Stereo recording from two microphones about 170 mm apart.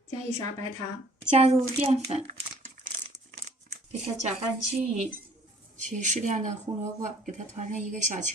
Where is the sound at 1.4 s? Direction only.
40° right (ahead or behind).